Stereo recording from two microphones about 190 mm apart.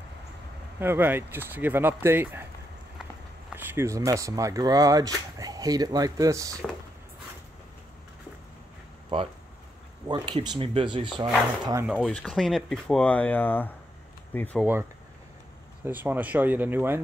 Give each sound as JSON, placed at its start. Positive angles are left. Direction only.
{"t": 0.7, "sound": "speech", "side_deg": -10}
{"t": 3.5, "sound": "speech", "side_deg": -10}
{"t": 10.0, "sound": "speech", "side_deg": -20}
{"t": 12.1, "sound": "speech", "side_deg": 0}
{"t": 14.6, "sound": "speech", "side_deg": -10}